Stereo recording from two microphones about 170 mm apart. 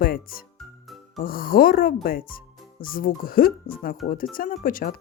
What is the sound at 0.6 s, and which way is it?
Music, centre (ahead or behind).